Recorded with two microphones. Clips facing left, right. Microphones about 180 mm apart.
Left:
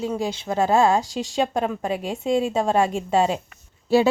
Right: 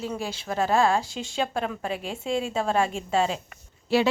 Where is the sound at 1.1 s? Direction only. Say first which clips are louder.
Left 5 dB; 35° left (ahead or behind).